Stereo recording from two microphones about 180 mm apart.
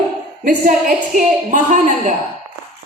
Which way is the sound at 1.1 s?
45° right (ahead or behind).